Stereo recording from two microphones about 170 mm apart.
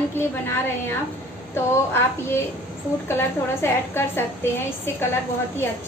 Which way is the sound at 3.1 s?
15° left (ahead or behind).